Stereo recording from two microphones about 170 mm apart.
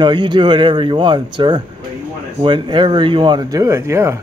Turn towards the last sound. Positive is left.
turn(degrees=-15)  # may be behind; listen again after turning